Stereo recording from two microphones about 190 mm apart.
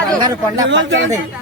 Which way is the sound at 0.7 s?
80° right.